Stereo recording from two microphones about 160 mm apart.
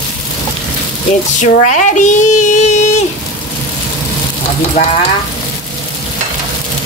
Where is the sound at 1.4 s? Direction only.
50° left (ahead or behind).